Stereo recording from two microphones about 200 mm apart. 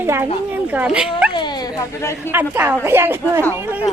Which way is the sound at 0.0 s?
10° right (ahead or behind).